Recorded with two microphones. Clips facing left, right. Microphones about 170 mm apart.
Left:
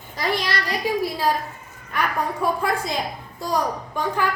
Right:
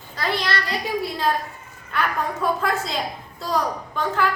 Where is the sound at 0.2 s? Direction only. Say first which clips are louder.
Left 1 dB; 15° left (ahead or behind).